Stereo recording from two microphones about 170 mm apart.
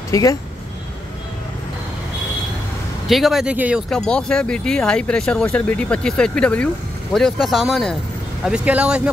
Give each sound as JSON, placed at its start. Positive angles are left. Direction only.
{"t": 0.1, "sound": "speech", "side_deg": 20}
{"t": 3.1, "sound": "speech", "side_deg": 0}
{"t": 3.9, "sound": "speech", "side_deg": 5}